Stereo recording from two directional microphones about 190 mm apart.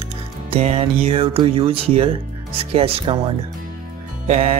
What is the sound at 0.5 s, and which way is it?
Speech, 35° right (ahead or behind).